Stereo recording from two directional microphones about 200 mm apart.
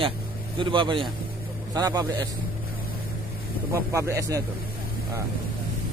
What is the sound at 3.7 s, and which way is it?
Speech, 15° right (ahead or behind).